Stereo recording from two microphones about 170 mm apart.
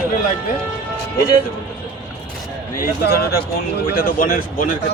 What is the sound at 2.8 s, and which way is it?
Speech, 65° left (ahead or behind).